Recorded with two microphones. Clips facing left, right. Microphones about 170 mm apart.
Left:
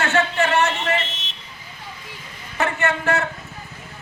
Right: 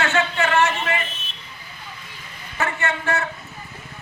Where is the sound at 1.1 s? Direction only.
90° left.